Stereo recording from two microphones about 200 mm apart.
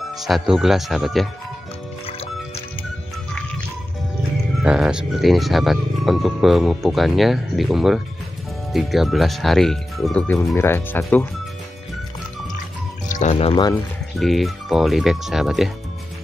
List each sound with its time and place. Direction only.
0.1 s speech: centre (ahead or behind)
2.0 s music: 30° left (ahead or behind)
4.6 s speech: 5° right (ahead or behind)
13.1 s speech: 35° left (ahead or behind); by 13.8 s 20° left (ahead or behind)
14.1 s speech: centre (ahead or behind)